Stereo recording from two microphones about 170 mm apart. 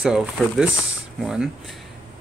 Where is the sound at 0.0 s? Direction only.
5° right (ahead or behind).